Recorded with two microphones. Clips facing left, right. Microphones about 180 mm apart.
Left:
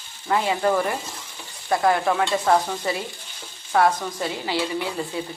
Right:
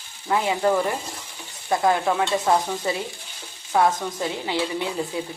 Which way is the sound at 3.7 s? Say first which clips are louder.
Left 1 dB; 15° right (ahead or behind).